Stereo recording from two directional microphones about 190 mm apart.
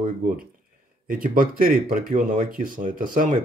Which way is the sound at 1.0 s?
45° right (ahead or behind).